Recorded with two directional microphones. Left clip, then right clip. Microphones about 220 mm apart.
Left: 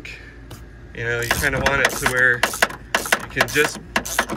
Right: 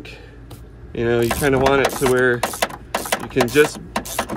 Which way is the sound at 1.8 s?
Centre (ahead or behind).